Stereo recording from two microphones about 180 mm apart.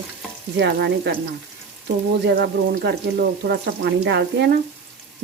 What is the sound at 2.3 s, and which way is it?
Speech, 65° right (ahead or behind).